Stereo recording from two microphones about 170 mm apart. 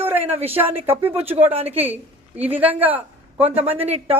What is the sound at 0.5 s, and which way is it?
Speech, 10° right (ahead or behind).